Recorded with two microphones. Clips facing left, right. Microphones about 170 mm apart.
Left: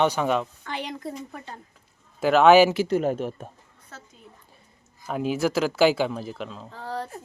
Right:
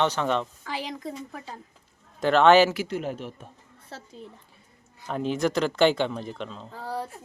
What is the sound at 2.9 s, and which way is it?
Speech, 45° left (ahead or behind).